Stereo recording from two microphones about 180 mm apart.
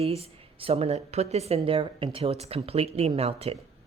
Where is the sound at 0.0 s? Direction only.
35° right (ahead or behind).